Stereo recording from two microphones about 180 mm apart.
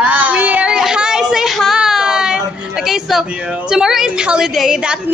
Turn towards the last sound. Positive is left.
turn(degrees=-5)  # may be behind; listen again after turning